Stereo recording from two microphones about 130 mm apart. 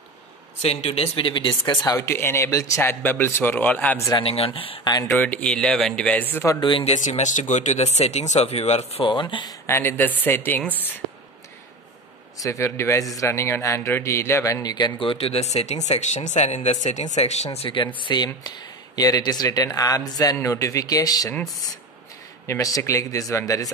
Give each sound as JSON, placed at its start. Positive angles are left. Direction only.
{"t": 0.6, "sound": "speech", "side_deg": 55}
{"t": 4.2, "sound": "speech", "side_deg": 45}
{"t": 5.1, "sound": "speech", "side_deg": 10}
{"t": 6.6, "sound": "a man's voice", "side_deg": 40}
{"t": 6.9, "sound": "speech", "side_deg": 60}
{"t": 9.0, "sound": "a man's voice", "side_deg": 40}
{"t": 9.7, "sound": "speech", "side_deg": 20}
{"t": 12.4, "sound": "a man's voice", "side_deg": 20}
{"t": 22.5, "sound": "speech", "side_deg": 25}